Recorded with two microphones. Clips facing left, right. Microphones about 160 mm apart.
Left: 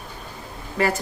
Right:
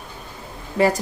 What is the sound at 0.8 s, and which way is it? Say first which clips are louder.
Speech: right 4 dB; 30° right (ahead or behind).